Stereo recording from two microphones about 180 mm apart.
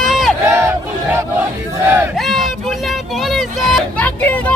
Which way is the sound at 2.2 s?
Centre (ahead or behind).